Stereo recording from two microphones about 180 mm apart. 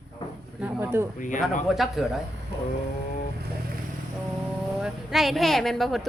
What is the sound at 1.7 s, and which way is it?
Speech, centre (ahead or behind).